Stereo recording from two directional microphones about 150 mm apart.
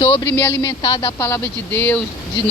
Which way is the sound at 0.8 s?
35° left (ahead or behind).